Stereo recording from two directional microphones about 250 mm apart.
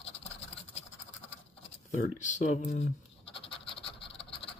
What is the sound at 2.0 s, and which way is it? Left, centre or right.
Speech, left.